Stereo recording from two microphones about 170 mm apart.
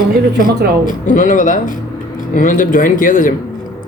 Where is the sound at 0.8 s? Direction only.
50° left (ahead or behind).